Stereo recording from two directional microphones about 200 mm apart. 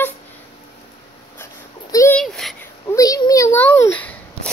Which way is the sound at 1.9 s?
15° left (ahead or behind).